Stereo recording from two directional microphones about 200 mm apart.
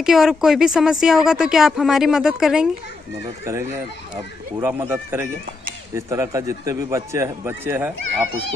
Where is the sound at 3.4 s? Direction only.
15° right (ahead or behind).